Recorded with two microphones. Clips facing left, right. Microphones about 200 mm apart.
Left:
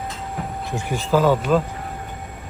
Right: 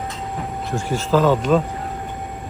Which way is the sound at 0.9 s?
10° left (ahead or behind).